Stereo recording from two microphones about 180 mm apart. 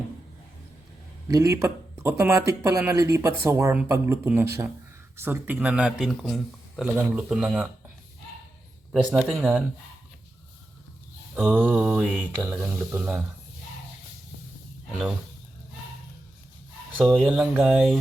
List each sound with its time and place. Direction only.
1.3 s speech: 15° right (ahead or behind)
9.3 s speech: 5° right (ahead or behind)
11.3 s speech: 5° right (ahead or behind)
16.9 s speech: 10° right (ahead or behind)